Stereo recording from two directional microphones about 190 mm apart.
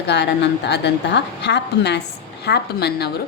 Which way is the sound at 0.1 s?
65° left (ahead or behind).